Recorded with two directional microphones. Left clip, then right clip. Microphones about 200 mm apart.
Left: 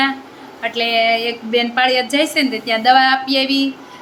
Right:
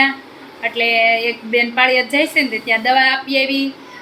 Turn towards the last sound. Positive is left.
turn(degrees=15)  # may be behind; listen again after turning